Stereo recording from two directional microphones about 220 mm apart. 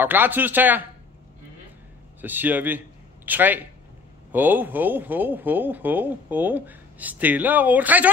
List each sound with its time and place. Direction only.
0.0 s a man's voice: 10° right (ahead or behind)
2.2 s a man's voice: 10° right (ahead or behind)